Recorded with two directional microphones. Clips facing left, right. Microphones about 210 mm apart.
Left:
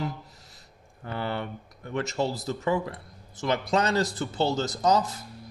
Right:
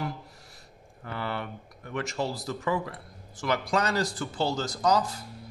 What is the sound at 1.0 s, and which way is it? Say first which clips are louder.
A man's voice: left 2 dB; 25° left (ahead or behind).